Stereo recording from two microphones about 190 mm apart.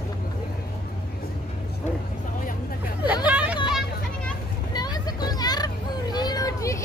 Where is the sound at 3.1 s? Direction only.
5° right (ahead or behind).